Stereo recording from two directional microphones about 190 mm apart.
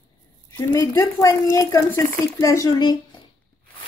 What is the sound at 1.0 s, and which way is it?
Speech, 15° left (ahead or behind).